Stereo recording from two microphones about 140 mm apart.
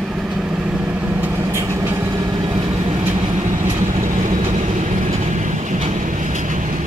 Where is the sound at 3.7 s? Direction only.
60° right (ahead or behind).